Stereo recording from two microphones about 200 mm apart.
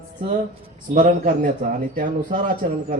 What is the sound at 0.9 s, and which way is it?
Speech, 45° right (ahead or behind).